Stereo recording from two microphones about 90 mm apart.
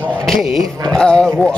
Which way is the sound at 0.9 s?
10° left (ahead or behind).